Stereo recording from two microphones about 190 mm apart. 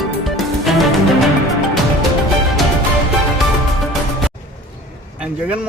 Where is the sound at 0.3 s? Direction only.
Centre (ahead or behind).